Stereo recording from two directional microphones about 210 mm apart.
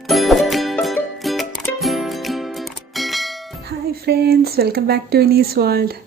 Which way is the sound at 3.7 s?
50° right (ahead or behind).